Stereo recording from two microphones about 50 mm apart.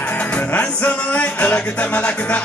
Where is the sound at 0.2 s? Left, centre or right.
Left.